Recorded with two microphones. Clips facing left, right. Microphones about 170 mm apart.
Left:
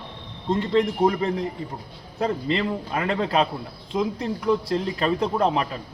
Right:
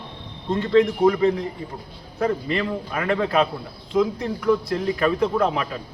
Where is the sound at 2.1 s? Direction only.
25° left (ahead or behind).